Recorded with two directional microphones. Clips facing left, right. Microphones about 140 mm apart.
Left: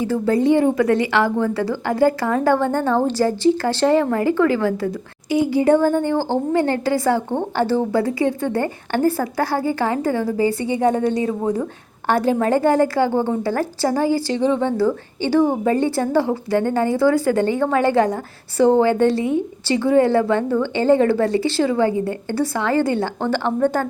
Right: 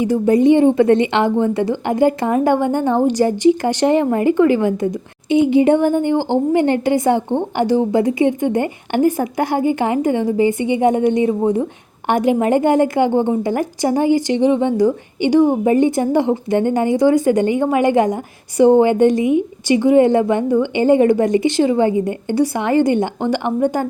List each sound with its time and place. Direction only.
0.0 s a woman's voice: 20° right (ahead or behind)